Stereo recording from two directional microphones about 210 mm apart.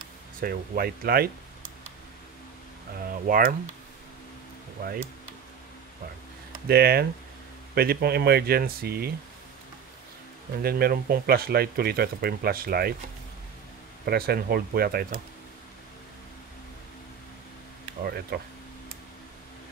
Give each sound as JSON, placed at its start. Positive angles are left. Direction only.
{"t": 0.4, "sound": "speech", "side_deg": -45}
{"t": 3.1, "sound": "speech", "side_deg": -40}
{"t": 6.7, "sound": "speech", "side_deg": -45}
{"t": 10.6, "sound": "speech", "side_deg": -45}
{"t": 14.0, "sound": "speech", "side_deg": -45}
{"t": 18.0, "sound": "speech", "side_deg": -50}